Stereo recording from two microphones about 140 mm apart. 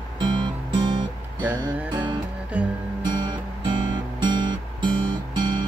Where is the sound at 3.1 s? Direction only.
30° right (ahead or behind).